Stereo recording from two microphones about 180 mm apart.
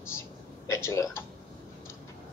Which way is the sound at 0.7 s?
15° left (ahead or behind).